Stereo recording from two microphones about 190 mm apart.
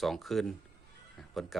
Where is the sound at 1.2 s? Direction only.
Centre (ahead or behind).